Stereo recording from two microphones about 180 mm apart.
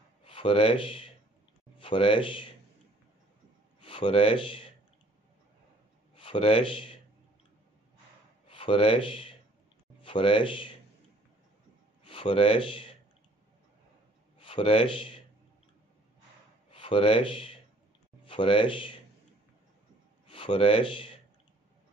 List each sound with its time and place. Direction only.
0.2 s speech: 30° left (ahead or behind)
3.8 s speech: 30° left (ahead or behind)
6.1 s a man's voice: 30° left (ahead or behind)
8.5 s speech: 30° left (ahead or behind)
12.0 s speech: 30° left (ahead or behind)
14.4 s a man's voice: 30° left (ahead or behind)
16.7 s speech: 30° left (ahead or behind)
20.2 s speech: 30° left (ahead or behind)